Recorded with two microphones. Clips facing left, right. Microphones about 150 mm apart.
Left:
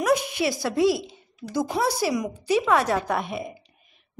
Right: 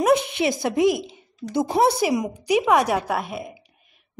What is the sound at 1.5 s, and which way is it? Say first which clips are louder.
A woman's voice: right 5 dB; 25° right (ahead or behind).